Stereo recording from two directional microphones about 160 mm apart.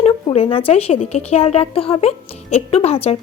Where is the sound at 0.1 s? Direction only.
35° left (ahead or behind).